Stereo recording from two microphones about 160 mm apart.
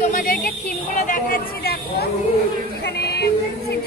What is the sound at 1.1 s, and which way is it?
Chatter, 70° left (ahead or behind).